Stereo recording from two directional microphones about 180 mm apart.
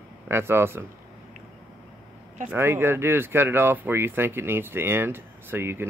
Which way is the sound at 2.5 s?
15° right (ahead or behind).